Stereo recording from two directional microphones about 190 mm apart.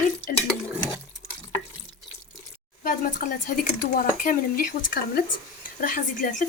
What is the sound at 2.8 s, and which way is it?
A woman's voice, 45° left (ahead or behind).